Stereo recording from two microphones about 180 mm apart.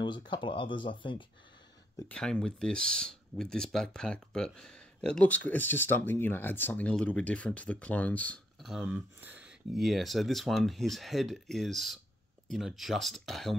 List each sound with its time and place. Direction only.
0.0 s speech: 25° left (ahead or behind)
2.0 s speech: 5° left (ahead or behind)